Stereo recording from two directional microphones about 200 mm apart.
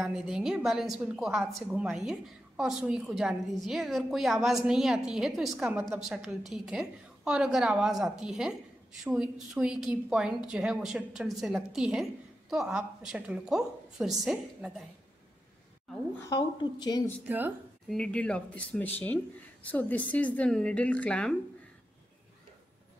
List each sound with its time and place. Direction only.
0.0 s a woman's voice: 5° right (ahead or behind)
16.3 s a woman's voice: 20° left (ahead or behind)
17.2 s speech: 5° right (ahead or behind)
17.9 s a woman's voice: 5° left (ahead or behind)